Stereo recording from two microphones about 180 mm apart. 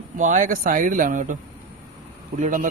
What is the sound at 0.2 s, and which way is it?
A man's voice, 45° right (ahead or behind).